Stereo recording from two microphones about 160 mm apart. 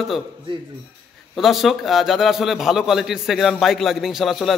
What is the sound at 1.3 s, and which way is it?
A man's voice, centre (ahead or behind).